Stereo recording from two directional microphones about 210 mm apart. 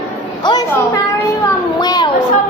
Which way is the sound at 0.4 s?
20° left (ahead or behind).